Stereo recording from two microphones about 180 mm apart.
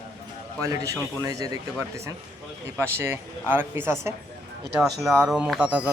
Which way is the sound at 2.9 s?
10° right (ahead or behind).